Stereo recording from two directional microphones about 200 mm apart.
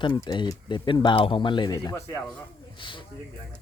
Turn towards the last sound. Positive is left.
turn(degrees=25)  # may be behind; listen again after turning